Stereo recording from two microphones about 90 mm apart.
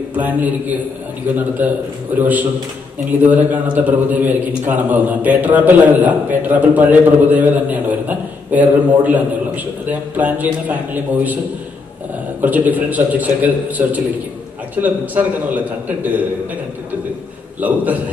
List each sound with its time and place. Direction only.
0.1 s a man's voice: 20° right (ahead or behind)
12.4 s a man's voice: 20° right (ahead or behind)
17.6 s a man's voice: 20° right (ahead or behind)